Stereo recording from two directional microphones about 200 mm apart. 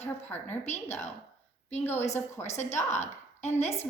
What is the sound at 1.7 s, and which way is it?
Speech, 10° left (ahead or behind).